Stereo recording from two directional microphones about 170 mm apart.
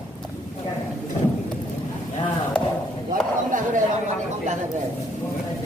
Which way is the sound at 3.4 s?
50° right (ahead or behind).